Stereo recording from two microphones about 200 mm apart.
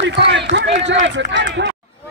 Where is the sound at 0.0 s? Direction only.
60° right (ahead or behind).